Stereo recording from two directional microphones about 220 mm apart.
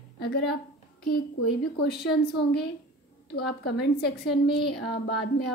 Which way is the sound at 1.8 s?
45° left (ahead or behind).